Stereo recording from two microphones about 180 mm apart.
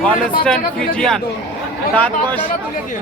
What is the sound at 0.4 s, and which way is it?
Speech, 5° left (ahead or behind).